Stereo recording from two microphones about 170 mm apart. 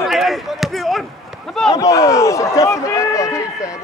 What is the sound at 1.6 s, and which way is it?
A man's voice, 20° left (ahead or behind).